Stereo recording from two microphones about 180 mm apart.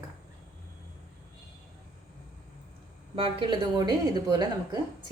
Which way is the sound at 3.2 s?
30° right (ahead or behind).